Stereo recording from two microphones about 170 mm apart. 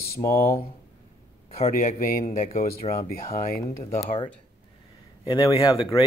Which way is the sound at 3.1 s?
60° left (ahead or behind).